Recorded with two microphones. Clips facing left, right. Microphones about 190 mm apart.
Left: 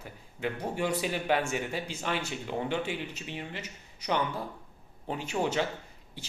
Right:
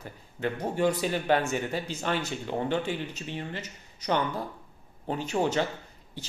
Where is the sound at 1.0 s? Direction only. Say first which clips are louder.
Right 3 dB; 5° left (ahead or behind).